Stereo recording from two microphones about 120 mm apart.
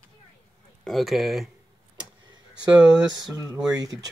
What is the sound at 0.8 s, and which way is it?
Speech, centre (ahead or behind).